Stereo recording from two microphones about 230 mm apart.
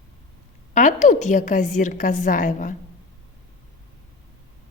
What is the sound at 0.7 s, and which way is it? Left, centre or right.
A woman's voice, left.